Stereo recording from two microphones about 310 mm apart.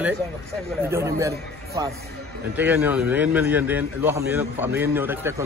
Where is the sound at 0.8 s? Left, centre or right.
Centre.